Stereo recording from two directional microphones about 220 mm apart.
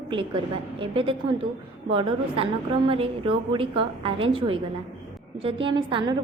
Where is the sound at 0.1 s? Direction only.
25° right (ahead or behind).